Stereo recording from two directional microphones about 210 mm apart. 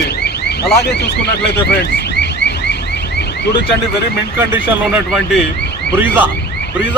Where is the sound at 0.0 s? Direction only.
50° left (ahead or behind).